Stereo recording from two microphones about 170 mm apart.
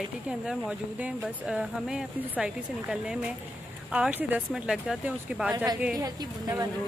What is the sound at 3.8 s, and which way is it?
Speech, 5° right (ahead or behind).